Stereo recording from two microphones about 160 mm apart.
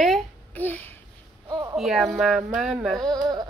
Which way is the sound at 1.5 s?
25° right (ahead or behind).